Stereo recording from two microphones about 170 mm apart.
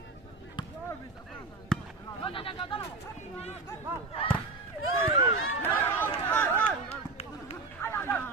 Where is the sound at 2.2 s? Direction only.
30° left (ahead or behind).